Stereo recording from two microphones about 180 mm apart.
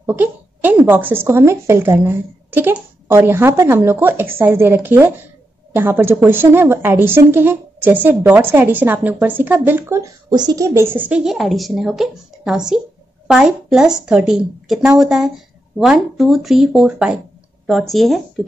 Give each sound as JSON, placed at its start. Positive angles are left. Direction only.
{"t": 0.0, "sound": "a woman's voice", "side_deg": -10}